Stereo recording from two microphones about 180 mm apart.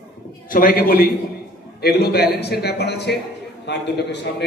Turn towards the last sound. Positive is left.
turn(degrees=70)  # may be behind; listen again after turning